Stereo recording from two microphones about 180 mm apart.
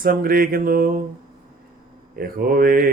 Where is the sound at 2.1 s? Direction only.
55° right (ahead or behind).